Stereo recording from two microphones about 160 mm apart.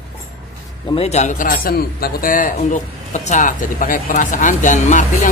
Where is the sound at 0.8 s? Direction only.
40° left (ahead or behind).